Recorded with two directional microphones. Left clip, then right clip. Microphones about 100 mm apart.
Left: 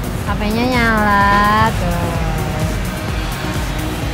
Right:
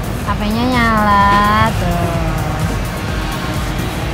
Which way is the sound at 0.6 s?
45° left (ahead or behind).